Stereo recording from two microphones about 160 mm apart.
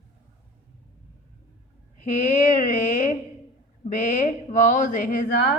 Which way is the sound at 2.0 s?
45° left (ahead or behind).